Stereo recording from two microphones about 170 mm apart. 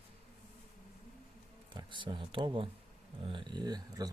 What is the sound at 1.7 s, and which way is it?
Speech, 30° right (ahead or behind).